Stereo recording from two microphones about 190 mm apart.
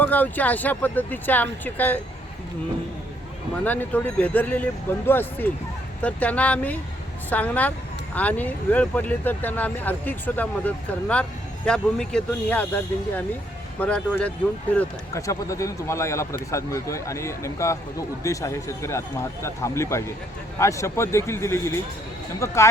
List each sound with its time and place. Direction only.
0.0 s speech: 10° left (ahead or behind)
3.6 s speech: 10° left (ahead or behind)